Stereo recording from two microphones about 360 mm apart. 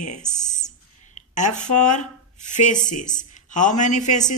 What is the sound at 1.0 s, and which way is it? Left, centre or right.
A man's voice, centre.